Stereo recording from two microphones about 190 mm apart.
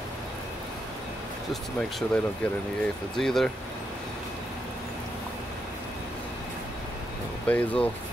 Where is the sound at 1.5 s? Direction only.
Centre (ahead or behind).